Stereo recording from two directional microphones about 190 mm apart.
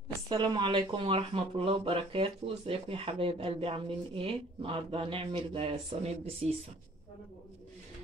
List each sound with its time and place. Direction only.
0.3 s speech: 25° right (ahead or behind)